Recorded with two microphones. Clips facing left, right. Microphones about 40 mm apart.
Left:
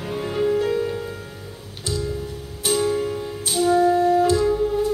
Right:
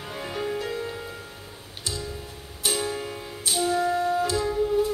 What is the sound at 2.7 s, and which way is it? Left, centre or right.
Music, centre.